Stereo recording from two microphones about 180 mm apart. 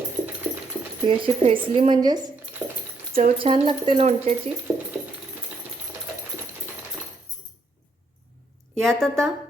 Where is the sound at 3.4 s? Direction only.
30° right (ahead or behind).